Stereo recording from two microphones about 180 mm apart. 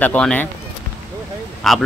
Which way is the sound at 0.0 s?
5° left (ahead or behind).